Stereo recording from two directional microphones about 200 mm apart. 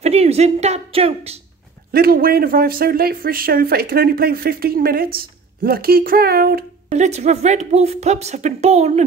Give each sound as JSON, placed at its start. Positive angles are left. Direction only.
{"t": 0.0, "sound": "a woman's voice", "side_deg": -30}
{"t": 1.9, "sound": "speech", "side_deg": -50}
{"t": 6.9, "sound": "a woman's voice", "side_deg": -35}